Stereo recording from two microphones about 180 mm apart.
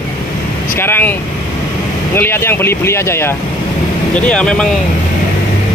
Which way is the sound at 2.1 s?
15° left (ahead or behind).